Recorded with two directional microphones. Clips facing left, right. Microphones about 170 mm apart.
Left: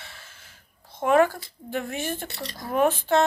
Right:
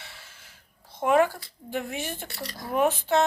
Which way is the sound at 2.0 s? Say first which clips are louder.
Left 4 dB; 55° left (ahead or behind).